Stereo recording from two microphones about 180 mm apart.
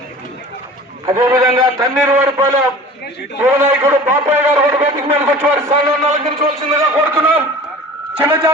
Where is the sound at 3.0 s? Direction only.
65° left (ahead or behind).